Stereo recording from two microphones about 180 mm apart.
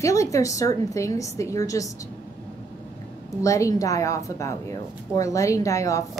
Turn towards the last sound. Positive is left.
turn(degrees=15)  # may be behind; listen again after turning